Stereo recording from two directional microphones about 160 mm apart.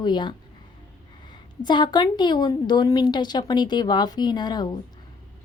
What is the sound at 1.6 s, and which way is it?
Speech, 30° left (ahead or behind).